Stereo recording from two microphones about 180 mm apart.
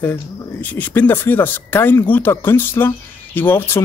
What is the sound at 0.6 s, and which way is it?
Speech, 10° left (ahead or behind).